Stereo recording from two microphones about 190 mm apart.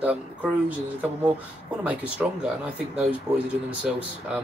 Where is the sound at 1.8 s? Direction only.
5° right (ahead or behind).